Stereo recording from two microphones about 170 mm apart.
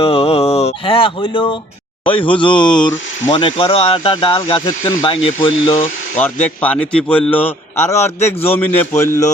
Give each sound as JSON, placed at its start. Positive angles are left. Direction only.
{"t": 0.0, "sound": "speech", "side_deg": 35}
{"t": 5.2, "sound": "speech", "side_deg": 35}
{"t": 6.1, "sound": "a man's voice", "side_deg": 10}